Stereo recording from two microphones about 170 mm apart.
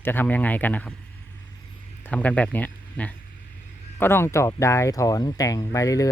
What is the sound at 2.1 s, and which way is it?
Speech, 10° left (ahead or behind).